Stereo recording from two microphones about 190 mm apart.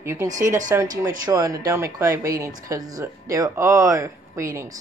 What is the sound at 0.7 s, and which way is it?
Speech, 15° right (ahead or behind).